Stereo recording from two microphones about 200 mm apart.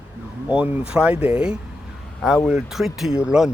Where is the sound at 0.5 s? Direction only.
5° right (ahead or behind).